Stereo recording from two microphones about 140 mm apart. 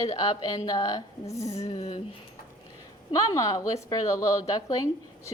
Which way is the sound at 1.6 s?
45° left (ahead or behind).